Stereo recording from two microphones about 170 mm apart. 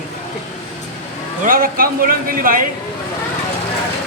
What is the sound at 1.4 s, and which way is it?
A man's voice, 55° right (ahead or behind).